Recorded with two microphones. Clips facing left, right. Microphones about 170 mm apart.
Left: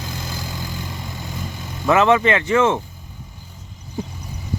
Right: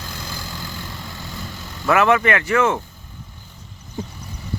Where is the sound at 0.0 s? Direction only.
20° left (ahead or behind).